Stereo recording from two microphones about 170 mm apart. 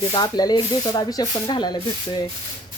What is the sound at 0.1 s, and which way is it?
Speech, 25° left (ahead or behind).